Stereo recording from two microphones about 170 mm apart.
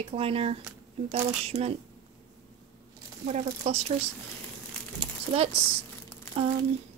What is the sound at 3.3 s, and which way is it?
Speech, 40° right (ahead or behind).